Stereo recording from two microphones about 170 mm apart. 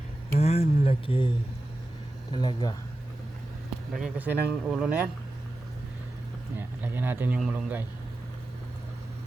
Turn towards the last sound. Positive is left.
turn(degrees=-10)  # may be behind; listen again after turning